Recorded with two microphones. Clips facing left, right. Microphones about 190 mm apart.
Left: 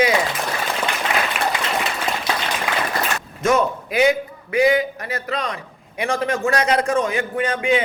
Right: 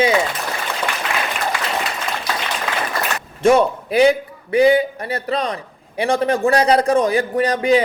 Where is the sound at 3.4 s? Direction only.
30° right (ahead or behind).